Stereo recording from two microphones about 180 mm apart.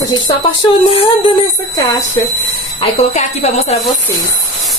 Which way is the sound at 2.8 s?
35° left (ahead or behind).